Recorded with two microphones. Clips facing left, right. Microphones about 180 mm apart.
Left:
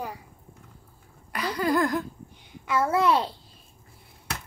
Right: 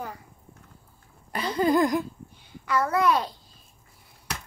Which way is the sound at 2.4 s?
25° left (ahead or behind).